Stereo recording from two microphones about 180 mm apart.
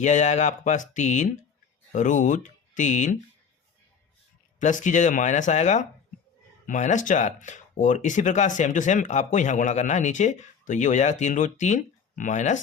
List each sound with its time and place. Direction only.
0.0 s speech: 40° left (ahead or behind)
4.6 s speech: 45° left (ahead or behind)